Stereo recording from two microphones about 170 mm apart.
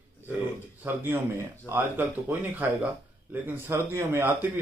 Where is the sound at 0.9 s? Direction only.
15° right (ahead or behind).